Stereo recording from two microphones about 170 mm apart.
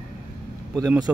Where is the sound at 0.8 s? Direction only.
20° right (ahead or behind).